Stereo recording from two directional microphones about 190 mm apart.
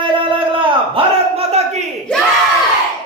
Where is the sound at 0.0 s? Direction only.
25° right (ahead or behind).